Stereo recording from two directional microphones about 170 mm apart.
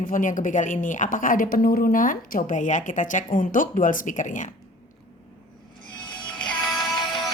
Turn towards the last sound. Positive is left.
turn(degrees=25)  # may be behind; listen again after turning